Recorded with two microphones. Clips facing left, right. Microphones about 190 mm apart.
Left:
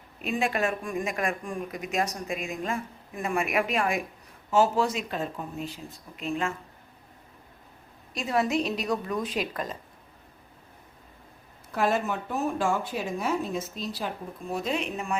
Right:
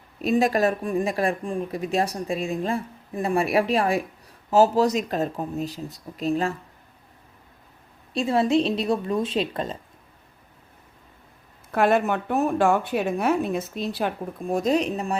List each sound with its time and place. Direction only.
0.2 s speech: 40° right (ahead or behind)
8.1 s a woman's voice: 30° right (ahead or behind)
11.7 s a woman's voice: 60° right (ahead or behind); by 15.1 s 35° right (ahead or behind)